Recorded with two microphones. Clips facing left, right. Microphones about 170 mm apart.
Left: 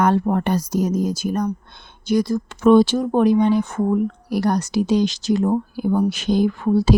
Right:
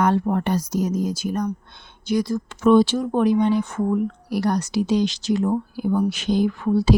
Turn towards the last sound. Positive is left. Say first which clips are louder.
# left 2 dB
turn(degrees=40)  # may be behind; listen again after turning